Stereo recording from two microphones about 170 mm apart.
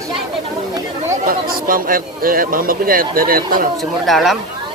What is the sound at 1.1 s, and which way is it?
Speech, 55° right (ahead or behind).